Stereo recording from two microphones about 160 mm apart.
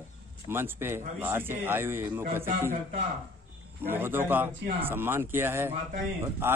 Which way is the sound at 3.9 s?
15° right (ahead or behind).